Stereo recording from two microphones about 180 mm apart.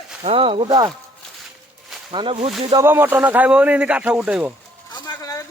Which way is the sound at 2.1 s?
30° right (ahead or behind).